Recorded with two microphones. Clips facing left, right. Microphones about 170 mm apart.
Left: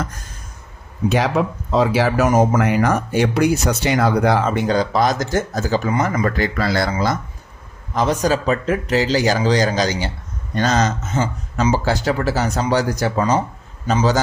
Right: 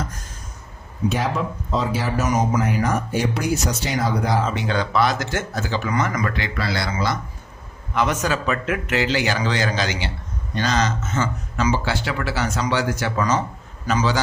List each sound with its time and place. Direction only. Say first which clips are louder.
1.1 s speech: left 8 dB; 70° left (ahead or behind); by 2.6 s 50° left (ahead or behind)
2.6 s speech: left 4 dB; 90° left; by 6.9 s 45° left (ahead or behind)
7.9 s a man's voice: left 4 dB; 35° left (ahead or behind)